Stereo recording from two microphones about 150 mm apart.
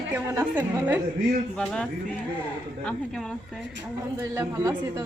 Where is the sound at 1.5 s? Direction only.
5° left (ahead or behind).